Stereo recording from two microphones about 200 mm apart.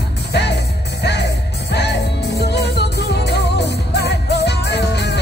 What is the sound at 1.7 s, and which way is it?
Music, 55° left (ahead or behind).